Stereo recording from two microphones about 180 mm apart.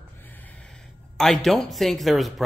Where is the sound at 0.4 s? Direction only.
10° left (ahead or behind).